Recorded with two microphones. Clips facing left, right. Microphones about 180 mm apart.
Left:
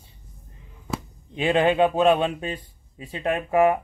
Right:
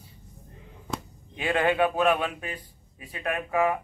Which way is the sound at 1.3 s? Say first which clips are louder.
Left 5 dB; 20° left (ahead or behind).